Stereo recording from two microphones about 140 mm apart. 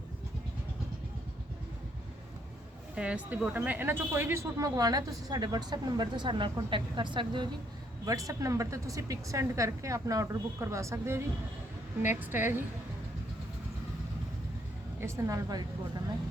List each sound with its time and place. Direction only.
2.9 s speech: 10° right (ahead or behind); by 7.4 s 35° right (ahead or behind)
8.0 s a woman's voice: 25° right (ahead or behind)
15.0 s speech: 20° right (ahead or behind)